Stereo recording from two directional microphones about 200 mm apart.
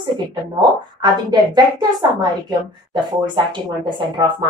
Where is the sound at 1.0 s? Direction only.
20° right (ahead or behind).